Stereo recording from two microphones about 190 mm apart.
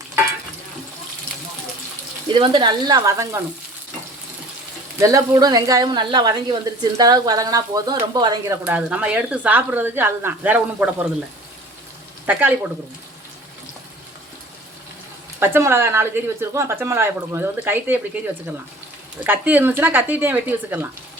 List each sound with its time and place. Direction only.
2.3 s speech: 25° right (ahead or behind)
4.9 s speech: 20° right (ahead or behind)
8.6 s a woman's voice: 5° right (ahead or behind)
12.2 s speech: 10° right (ahead or behind)
15.4 s a woman's voice: 10° right (ahead or behind)
19.2 s a woman's voice: 10° right (ahead or behind)